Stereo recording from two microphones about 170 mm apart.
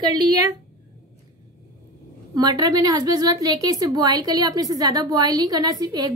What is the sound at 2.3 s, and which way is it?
A woman's voice, 25° right (ahead or behind).